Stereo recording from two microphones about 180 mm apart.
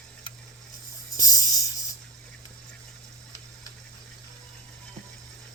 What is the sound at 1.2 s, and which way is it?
Music, 20° left (ahead or behind).